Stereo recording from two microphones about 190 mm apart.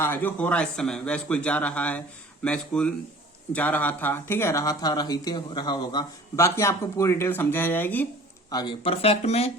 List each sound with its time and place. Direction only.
0.0 s speech: 10° left (ahead or behind)
8.4 s speech: 20° left (ahead or behind)